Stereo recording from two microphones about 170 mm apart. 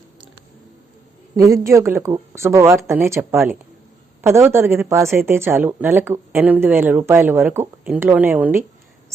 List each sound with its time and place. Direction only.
1.4 s speech: 20° right (ahead or behind)